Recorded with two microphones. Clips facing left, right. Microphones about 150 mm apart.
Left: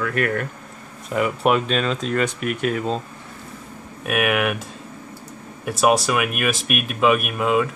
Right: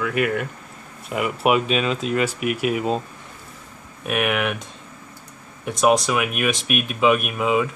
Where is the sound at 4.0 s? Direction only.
5° left (ahead or behind).